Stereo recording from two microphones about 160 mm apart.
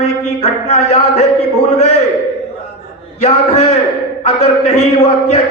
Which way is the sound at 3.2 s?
40° left (ahead or behind).